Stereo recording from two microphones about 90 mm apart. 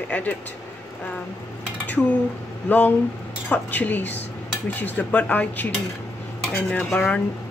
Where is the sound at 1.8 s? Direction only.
20° left (ahead or behind).